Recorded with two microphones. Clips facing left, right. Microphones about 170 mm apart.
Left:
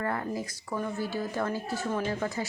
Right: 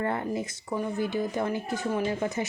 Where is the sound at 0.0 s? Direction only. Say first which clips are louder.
Right 3 dB; 25° right (ahead or behind).